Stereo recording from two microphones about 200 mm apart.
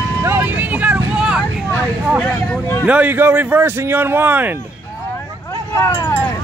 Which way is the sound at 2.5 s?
10° left (ahead or behind).